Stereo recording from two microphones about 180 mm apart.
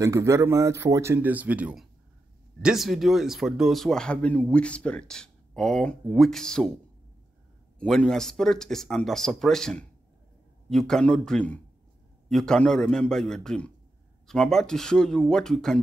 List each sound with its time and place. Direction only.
0.0 s speech: 15° right (ahead or behind); by 6.7 s 5° left (ahead or behind)
7.8 s speech: 5° left (ahead or behind)